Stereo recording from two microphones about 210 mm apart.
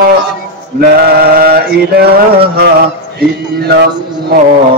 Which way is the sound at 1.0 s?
45° right (ahead or behind).